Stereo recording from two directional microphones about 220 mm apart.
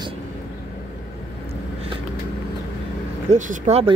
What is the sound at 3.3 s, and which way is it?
Speech, 30° right (ahead or behind).